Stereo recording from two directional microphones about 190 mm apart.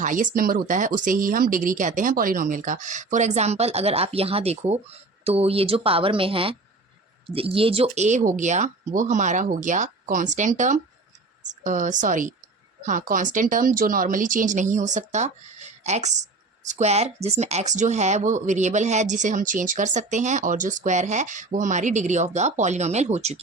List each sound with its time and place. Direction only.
0.0 s speech: 45° right (ahead or behind)